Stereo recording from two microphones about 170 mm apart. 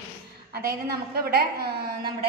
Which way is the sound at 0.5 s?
65° right (ahead or behind).